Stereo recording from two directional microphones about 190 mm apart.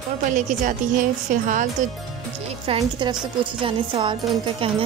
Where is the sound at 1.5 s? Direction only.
40° right (ahead or behind).